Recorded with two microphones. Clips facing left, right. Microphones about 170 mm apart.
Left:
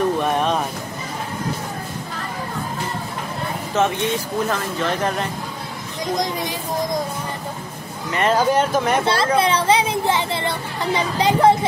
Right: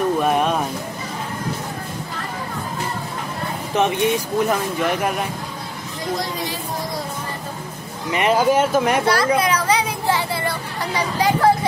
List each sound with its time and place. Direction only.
0.2 s a sound: 10° right (ahead or behind)
3.7 s speech: 15° right (ahead or behind)
8.1 s speech: 10° right (ahead or behind)
9.0 s a child's voice: 25° left (ahead or behind)
9.4 s children playing: 30° left (ahead or behind)
11.0 s a child's voice: 20° left (ahead or behind)